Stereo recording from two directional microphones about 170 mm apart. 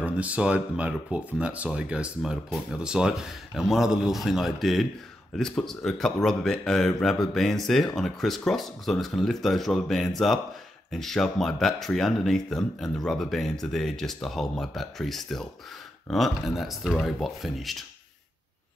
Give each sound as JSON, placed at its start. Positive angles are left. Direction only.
{"t": 0.0, "sound": "speech", "side_deg": -10}